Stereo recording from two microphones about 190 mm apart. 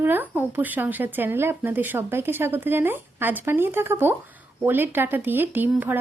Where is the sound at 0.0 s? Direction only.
10° right (ahead or behind).